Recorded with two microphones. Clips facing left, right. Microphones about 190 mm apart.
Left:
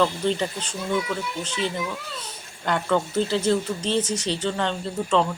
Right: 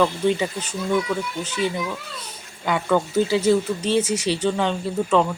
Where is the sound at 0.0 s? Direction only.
10° right (ahead or behind).